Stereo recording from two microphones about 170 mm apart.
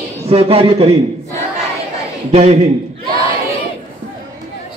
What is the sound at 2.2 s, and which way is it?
Speech, 40° right (ahead or behind).